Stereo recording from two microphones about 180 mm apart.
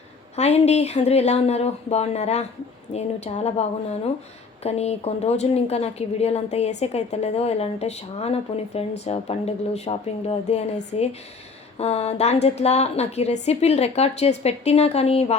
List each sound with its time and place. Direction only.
0.3 s a woman's voice: 35° left (ahead or behind)